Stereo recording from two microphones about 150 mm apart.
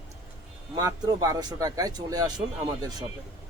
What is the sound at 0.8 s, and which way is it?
Speech, 25° right (ahead or behind).